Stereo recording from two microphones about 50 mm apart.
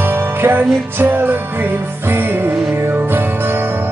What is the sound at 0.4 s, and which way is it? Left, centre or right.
Music, right.